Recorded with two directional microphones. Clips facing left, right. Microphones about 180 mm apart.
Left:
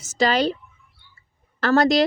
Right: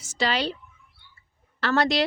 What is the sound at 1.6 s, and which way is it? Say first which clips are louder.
Speech: left 6 dB; 45° left (ahead or behind).